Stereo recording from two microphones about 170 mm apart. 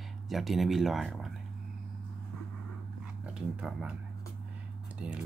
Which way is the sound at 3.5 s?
5° right (ahead or behind).